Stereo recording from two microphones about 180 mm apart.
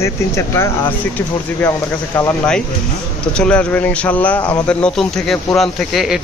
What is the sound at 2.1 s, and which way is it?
Speech, 10° left (ahead or behind).